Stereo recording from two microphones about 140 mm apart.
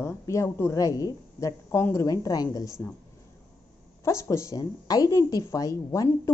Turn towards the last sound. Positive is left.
turn(degrees=25)  # may be behind; listen again after turning